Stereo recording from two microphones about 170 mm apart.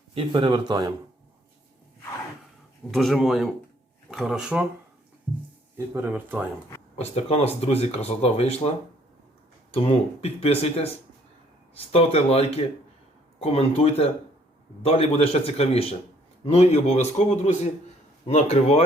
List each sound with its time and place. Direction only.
0.1 s speech: 30° right (ahead or behind)
2.9 s speech: centre (ahead or behind)
5.7 s speech: 15° right (ahead or behind)
7.0 s speech: 40° left (ahead or behind)
9.7 s speech: 35° left (ahead or behind)